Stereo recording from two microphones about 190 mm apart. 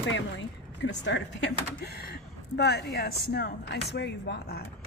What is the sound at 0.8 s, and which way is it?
Speech, 70° left (ahead or behind).